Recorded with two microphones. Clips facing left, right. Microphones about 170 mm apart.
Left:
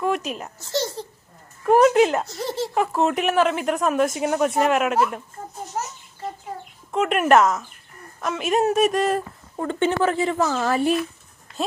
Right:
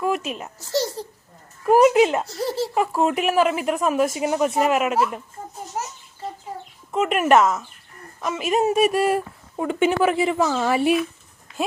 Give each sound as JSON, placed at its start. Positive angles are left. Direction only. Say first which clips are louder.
{"t": 0.0, "sound": "speech", "louder": "even", "side_deg": -5}
{"t": 0.6, "sound": "babbling", "louder": "right 2 dB", "side_deg": -35}
{"t": 1.6, "sound": "speech", "louder": "right 1 dB", "side_deg": -5}
{"t": 5.8, "sound": "a sound", "louder": "left 1 dB", "side_deg": -10}
{"t": 6.9, "sound": "speech", "louder": "even", "side_deg": -5}